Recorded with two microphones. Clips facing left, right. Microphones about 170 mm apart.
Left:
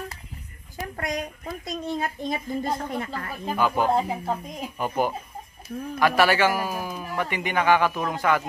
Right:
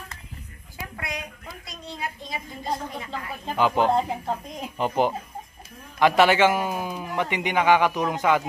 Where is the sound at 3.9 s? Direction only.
5° left (ahead or behind).